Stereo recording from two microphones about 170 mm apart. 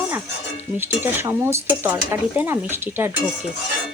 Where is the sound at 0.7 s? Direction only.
15° right (ahead or behind).